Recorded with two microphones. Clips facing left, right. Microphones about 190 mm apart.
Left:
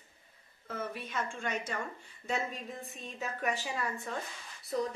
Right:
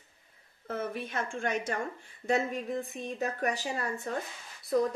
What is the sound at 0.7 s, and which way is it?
Speech, 55° right (ahead or behind).